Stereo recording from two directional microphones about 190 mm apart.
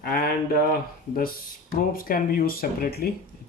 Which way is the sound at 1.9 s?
50° left (ahead or behind).